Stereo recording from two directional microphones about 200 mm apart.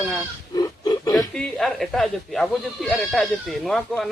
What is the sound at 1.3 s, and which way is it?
Speech, 5° left (ahead or behind).